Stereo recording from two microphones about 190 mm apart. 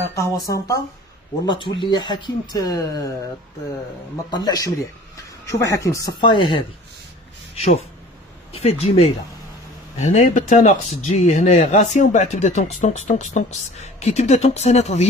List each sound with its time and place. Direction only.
0.1 s speech: 15° left (ahead or behind)
4.3 s speech: 20° left (ahead or behind)